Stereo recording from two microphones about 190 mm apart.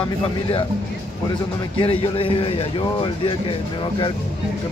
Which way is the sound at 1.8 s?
30° left (ahead or behind).